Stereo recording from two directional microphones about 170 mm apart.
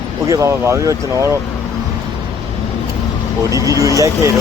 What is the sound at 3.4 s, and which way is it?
Speech, 20° right (ahead or behind).